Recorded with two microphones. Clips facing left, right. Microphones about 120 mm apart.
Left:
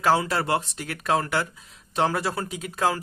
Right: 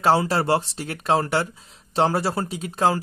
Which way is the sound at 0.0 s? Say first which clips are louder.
Right 3 dB; 30° right (ahead or behind).